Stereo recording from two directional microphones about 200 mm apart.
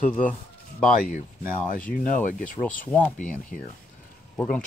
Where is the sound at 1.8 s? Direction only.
45° left (ahead or behind).